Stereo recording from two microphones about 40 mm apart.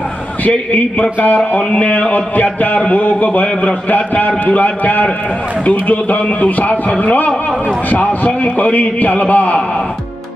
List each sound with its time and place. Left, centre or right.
0.5 s a man's voice: left